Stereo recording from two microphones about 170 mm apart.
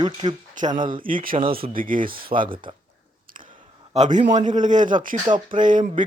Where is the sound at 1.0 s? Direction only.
55° right (ahead or behind).